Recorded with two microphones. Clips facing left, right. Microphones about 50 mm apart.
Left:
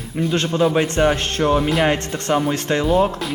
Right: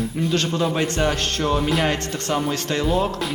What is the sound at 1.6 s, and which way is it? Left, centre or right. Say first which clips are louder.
Speech: left 3 dB; centre.